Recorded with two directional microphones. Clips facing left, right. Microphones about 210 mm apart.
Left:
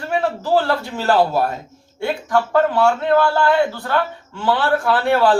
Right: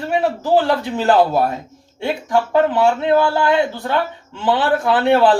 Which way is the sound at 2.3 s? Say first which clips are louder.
Right 1 dB; 20° right (ahead or behind).